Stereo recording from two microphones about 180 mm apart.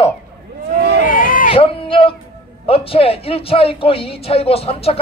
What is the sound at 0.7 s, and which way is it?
Speech, 65° right (ahead or behind).